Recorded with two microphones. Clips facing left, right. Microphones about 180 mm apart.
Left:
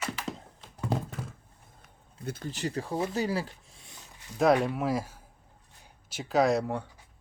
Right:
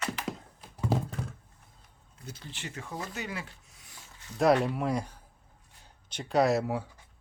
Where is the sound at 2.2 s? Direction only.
50° left (ahead or behind); by 3.0 s 35° left (ahead or behind).